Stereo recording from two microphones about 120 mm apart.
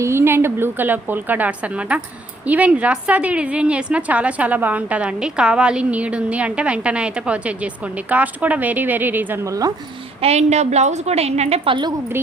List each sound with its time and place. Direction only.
0.0 s a woman's voice: 20° right (ahead or behind)
10.2 s a woman's voice: 60° right (ahead or behind); by 11.9 s 40° right (ahead or behind)